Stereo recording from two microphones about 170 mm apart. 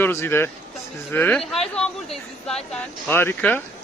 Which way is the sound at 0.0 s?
15° left (ahead or behind).